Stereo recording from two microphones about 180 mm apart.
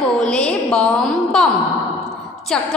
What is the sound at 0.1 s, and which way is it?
Music, 5° left (ahead or behind).